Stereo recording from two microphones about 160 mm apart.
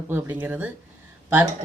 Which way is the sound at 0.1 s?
10° right (ahead or behind).